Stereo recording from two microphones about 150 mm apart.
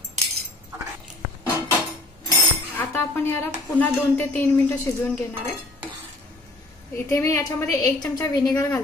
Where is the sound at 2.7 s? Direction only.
15° left (ahead or behind).